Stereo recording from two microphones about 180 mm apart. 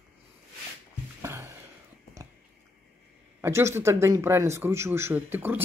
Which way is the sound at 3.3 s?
15° right (ahead or behind).